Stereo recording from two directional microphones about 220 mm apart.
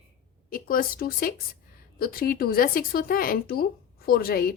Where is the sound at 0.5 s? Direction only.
40° left (ahead or behind).